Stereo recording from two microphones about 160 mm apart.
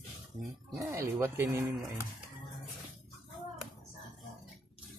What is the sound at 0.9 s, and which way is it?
Speech, 15° right (ahead or behind).